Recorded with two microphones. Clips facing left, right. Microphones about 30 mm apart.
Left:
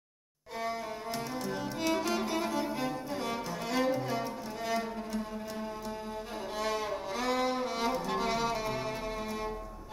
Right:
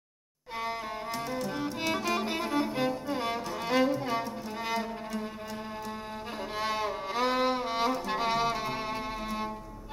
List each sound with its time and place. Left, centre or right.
1.5 s music: right
1.9 s music: centre
2.1 s music: right
6.5 s music: right